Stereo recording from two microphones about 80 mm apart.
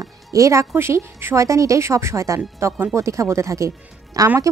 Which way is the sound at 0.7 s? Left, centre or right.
Right.